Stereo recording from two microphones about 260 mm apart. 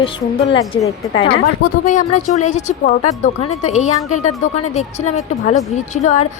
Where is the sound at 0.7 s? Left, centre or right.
Centre.